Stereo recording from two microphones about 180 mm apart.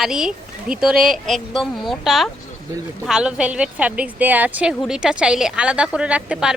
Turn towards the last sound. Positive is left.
turn(degrees=-5)  # may be behind; listen again after turning